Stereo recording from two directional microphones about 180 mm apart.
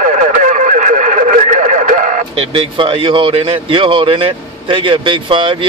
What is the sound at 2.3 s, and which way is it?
Speech, 30° right (ahead or behind).